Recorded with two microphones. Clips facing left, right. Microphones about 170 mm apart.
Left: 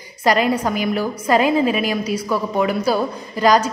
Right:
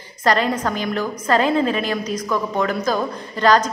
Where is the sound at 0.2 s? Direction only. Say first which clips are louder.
Left 2 dB; 10° left (ahead or behind).